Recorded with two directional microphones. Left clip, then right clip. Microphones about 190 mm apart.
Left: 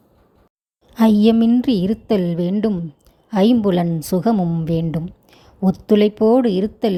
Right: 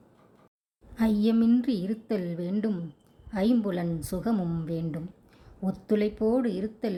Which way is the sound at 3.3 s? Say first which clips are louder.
Left 11 dB; 40° left (ahead or behind).